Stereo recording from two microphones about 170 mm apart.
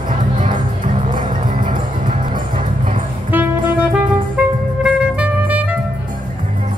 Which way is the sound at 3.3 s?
10° right (ahead or behind).